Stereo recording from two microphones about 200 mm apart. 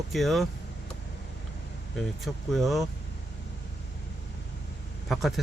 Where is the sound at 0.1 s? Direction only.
Centre (ahead or behind).